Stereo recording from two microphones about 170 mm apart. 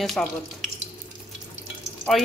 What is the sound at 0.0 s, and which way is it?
Speech, centre (ahead or behind).